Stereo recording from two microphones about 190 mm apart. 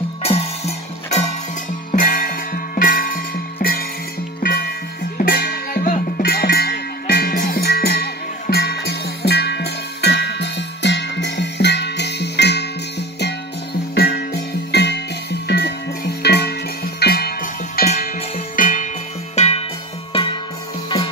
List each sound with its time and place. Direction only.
0.2 s music: 30° left (ahead or behind)
1.9 s music: 45° left (ahead or behind); by 12.6 s 60° left (ahead or behind)
13.9 s music: 60° left (ahead or behind)
17.8 s music: 35° left (ahead or behind)